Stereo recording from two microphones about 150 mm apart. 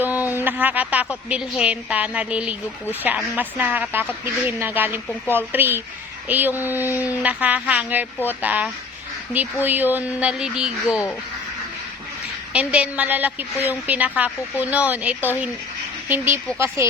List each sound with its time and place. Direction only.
0.0 s a sound: 10° right (ahead or behind)
0.3 s a woman's voice: 10° right (ahead or behind)
6.9 s speech: 20° left (ahead or behind)
7.2 s a woman's voice: 10° right (ahead or behind)
12.5 s a woman's voice: 10° right (ahead or behind)